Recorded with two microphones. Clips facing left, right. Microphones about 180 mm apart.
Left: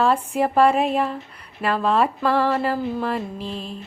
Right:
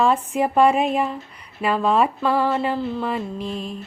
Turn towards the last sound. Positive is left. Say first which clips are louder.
# right 2 dB
turn(degrees=35)  # may be behind; listen again after turning